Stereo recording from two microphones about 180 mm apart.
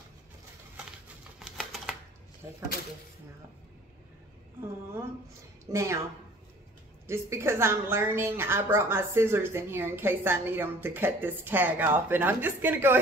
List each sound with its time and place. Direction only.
1.4 s typewriter: centre (ahead or behind)
5.7 s a woman's voice: 15° right (ahead or behind)
7.1 s a woman's voice: 15° right (ahead or behind)